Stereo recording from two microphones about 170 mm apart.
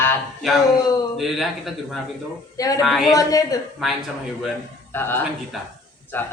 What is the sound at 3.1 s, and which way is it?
Speech, 20° left (ahead or behind).